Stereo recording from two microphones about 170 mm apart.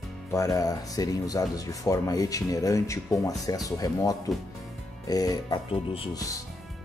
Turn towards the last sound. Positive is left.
turn(degrees=35)  # may be behind; listen again after turning